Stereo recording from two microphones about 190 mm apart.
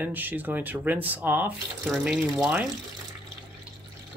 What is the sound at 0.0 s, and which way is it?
Speech, 10° right (ahead or behind).